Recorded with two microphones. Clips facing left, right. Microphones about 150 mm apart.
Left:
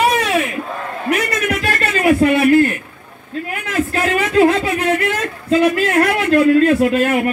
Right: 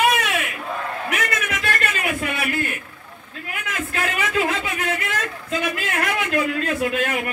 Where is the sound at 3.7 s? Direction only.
35° left (ahead or behind).